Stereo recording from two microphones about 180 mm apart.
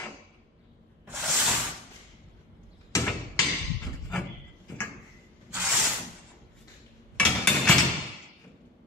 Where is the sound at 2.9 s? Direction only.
15° left (ahead or behind).